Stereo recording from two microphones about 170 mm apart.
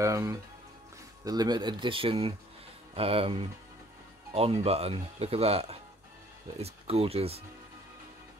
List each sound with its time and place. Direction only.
0.0 s speech: 20° right (ahead or behind); by 7.4 s 35° right (ahead or behind)